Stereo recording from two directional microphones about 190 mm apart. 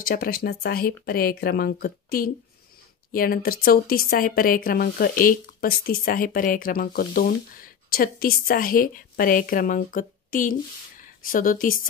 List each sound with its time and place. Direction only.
0.0 s a woman's voice: 50° left (ahead or behind)